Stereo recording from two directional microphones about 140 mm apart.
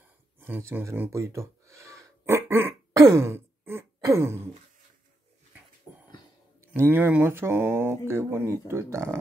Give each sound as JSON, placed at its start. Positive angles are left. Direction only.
{"t": 0.4, "sound": "speech", "side_deg": -20}
{"t": 6.6, "sound": "speech", "side_deg": -15}